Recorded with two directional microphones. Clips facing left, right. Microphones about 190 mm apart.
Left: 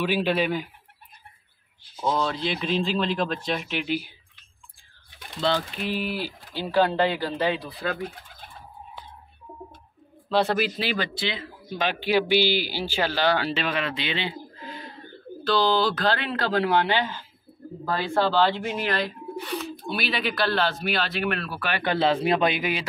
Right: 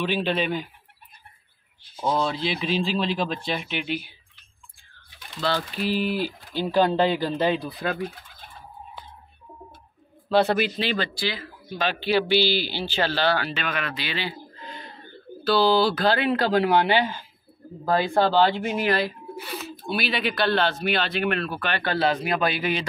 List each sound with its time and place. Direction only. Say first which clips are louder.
0.0 s speech: left 1 dB; 10° left (ahead or behind)
2.0 s speech: right 1 dB; 10° right (ahead or behind)
5.4 s speech: left 1 dB; 25° left (ahead or behind)
5.9 s speech: right 4 dB; 10° left (ahead or behind)
6.6 s speech: right 1 dB; 15° right (ahead or behind)
10.3 s speech: right 2 dB; centre (ahead or behind)
11.1 s speech: right 1 dB; 25° left (ahead or behind)
13.4 s speech: left 2 dB; 30° left (ahead or behind)
14.5 s a sound: left 2 dB; 5° left (ahead or behind)
15.4 s speech: right 2 dB; 10° right (ahead or behind); by 21.9 s 10° left (ahead or behind)
22.0 s speech: left 3 dB; 25° left (ahead or behind)